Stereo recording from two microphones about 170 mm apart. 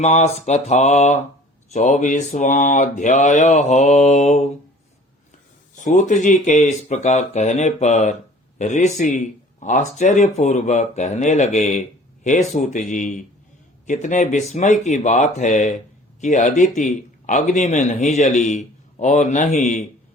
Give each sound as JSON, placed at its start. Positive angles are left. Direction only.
{"t": 0.0, "sound": "mantra", "side_deg": 40}
{"t": 1.7, "sound": "speech", "side_deg": 45}
{"t": 5.8, "sound": "speech", "side_deg": 45}